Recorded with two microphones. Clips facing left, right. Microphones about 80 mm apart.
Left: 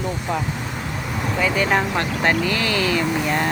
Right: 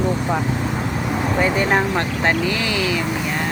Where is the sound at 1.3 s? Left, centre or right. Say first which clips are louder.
Right 1 dB; right; by 3.0 s centre.